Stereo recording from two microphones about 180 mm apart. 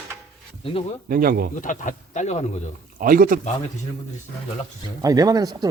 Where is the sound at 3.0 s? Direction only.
50° right (ahead or behind).